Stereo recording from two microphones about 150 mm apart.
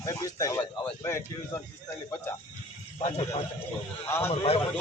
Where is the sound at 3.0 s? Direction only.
45° left (ahead or behind).